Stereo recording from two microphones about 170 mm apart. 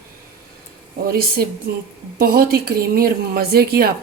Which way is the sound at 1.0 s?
65° right (ahead or behind).